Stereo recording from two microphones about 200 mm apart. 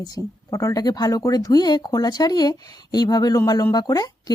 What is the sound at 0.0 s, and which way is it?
Speech, 15° left (ahead or behind).